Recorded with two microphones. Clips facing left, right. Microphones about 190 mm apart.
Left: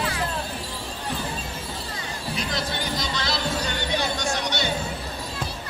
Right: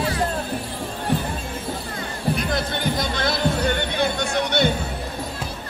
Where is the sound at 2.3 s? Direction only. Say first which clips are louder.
Right 5 dB; 55° right (ahead or behind).